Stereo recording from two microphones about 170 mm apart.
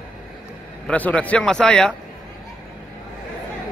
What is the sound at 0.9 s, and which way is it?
Speech, 5° left (ahead or behind).